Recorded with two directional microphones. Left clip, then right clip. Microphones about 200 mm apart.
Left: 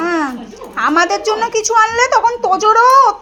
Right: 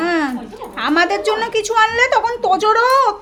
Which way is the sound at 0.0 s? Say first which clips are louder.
Left 1 dB; 5° right (ahead or behind).